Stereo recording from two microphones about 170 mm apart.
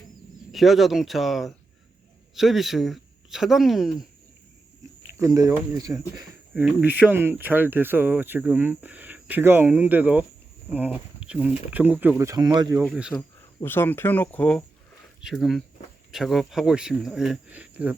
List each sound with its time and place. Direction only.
0.5 s speech: centre (ahead or behind)
5.1 s speech: 20° right (ahead or behind)
6.6 s speech: 10° right (ahead or behind)
12.8 s speech: centre (ahead or behind)
13.6 s speech: 15° left (ahead or behind); by 17.9 s 10° right (ahead or behind)